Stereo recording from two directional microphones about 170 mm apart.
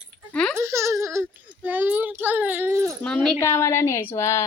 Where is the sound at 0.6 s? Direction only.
15° right (ahead or behind).